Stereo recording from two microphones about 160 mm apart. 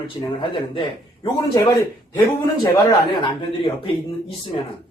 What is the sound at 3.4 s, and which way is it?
Speech, 30° left (ahead or behind).